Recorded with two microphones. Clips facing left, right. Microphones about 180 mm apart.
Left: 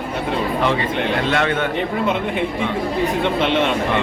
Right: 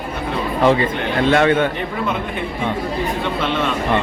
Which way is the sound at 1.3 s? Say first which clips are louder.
Right 9 dB; 40° right (ahead or behind).